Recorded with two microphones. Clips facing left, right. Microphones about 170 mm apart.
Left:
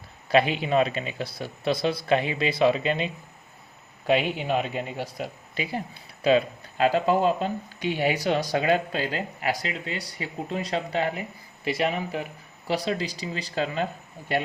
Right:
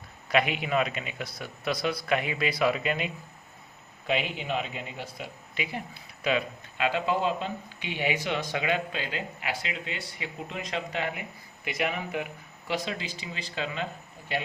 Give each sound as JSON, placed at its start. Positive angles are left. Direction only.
{"t": 0.3, "sound": "a man's voice", "side_deg": 30}
{"t": 4.0, "sound": "speech", "side_deg": 40}